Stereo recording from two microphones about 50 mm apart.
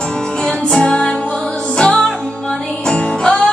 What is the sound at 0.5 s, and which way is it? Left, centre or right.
Music, centre.